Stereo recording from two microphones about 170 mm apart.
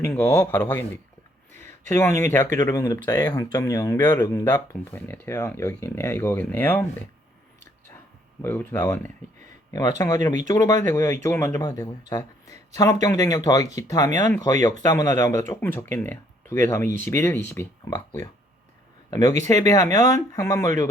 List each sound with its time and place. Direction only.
0.0 s speech: 10° left (ahead or behind)
8.4 s speech: 10° left (ahead or behind)
19.6 s speech: 20° left (ahead or behind)